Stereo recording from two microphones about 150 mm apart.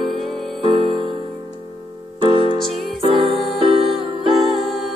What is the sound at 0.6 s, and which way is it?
Music, 35° right (ahead or behind).